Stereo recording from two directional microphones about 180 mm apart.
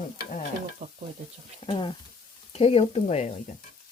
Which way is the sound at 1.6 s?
30° left (ahead or behind).